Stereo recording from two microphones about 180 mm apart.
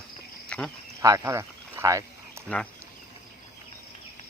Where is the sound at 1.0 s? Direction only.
20° right (ahead or behind).